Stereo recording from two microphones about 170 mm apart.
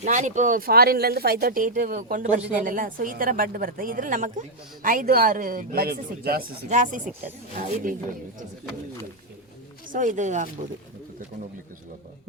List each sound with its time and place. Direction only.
0.0 s speech: 45° right (ahead or behind); by 6.7 s 65° right (ahead or behind)
6.7 s speech: 50° right (ahead or behind)
7.0 s speech: 10° right (ahead or behind)
7.5 s speech: 55° right (ahead or behind)
9.9 s speech: 50° right (ahead or behind)